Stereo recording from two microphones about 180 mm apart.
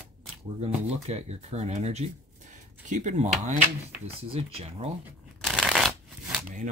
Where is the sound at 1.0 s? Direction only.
35° right (ahead or behind).